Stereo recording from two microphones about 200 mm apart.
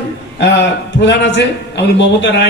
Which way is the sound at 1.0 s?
60° left (ahead or behind).